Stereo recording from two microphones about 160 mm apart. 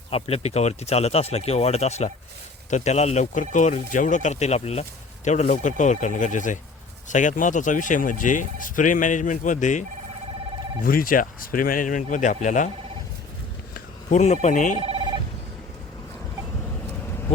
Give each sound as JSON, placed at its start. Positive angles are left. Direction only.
{"t": 0.1, "sound": "speech", "side_deg": 40}
{"t": 10.8, "sound": "speech", "side_deg": 60}
{"t": 13.7, "sound": "a sound", "side_deg": 45}
{"t": 14.4, "sound": "speech", "side_deg": 50}
{"t": 14.8, "sound": "telephone bell ringing", "side_deg": -35}